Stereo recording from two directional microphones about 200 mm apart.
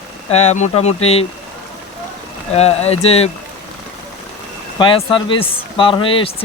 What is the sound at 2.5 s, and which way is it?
Speech, 30° left (ahead or behind).